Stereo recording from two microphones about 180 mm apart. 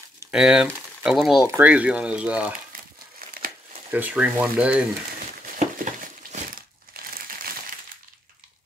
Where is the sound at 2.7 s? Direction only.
50° right (ahead or behind).